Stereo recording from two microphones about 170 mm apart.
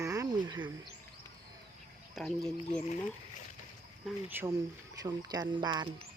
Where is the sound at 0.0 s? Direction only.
20° right (ahead or behind).